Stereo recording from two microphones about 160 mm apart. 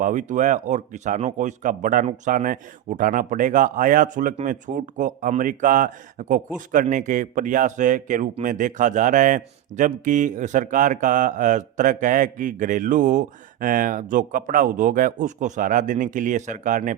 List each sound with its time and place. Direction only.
0.0 s speech: 55° right (ahead or behind)